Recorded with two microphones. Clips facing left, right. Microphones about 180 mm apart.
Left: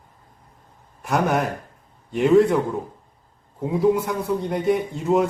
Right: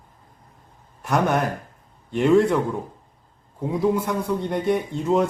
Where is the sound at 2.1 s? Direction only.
5° left (ahead or behind).